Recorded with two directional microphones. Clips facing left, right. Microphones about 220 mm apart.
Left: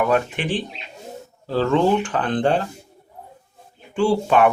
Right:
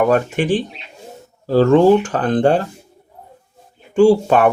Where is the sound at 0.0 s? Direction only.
45° right (ahead or behind).